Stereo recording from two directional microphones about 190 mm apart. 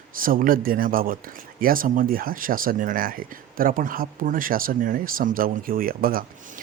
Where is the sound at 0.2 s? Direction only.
45° right (ahead or behind).